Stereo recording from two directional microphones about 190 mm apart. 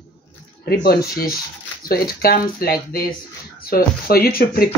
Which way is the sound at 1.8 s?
50° left (ahead or behind).